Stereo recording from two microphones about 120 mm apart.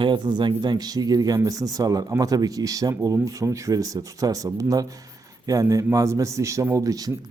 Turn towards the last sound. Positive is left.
turn(degrees=-30)  # may be behind; listen again after turning